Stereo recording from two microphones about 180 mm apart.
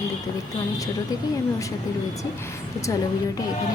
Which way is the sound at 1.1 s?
20° left (ahead or behind).